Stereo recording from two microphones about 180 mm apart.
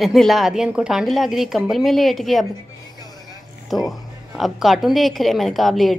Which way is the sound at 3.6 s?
Centre (ahead or behind).